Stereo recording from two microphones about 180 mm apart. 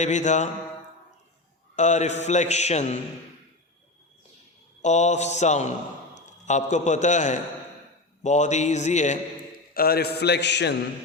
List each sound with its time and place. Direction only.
0.0 s a man's voice: 40° left (ahead or behind)
1.7 s a man's voice: 40° left (ahead or behind)
4.8 s a man's voice: 40° left (ahead or behind)
9.7 s a man's voice: 60° left (ahead or behind)